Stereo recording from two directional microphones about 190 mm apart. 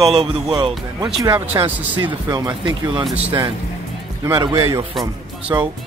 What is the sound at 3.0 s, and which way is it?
Speech, 10° right (ahead or behind).